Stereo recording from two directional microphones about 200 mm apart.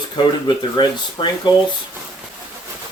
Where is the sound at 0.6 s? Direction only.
20° left (ahead or behind).